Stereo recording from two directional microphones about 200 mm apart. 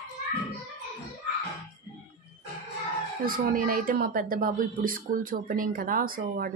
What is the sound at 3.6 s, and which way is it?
Speech, 45° right (ahead or behind).